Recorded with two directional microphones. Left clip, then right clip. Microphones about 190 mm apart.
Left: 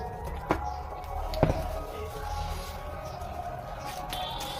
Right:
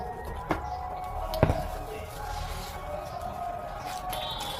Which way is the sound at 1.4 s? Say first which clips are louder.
Right 1 dB; 40° right (ahead or behind).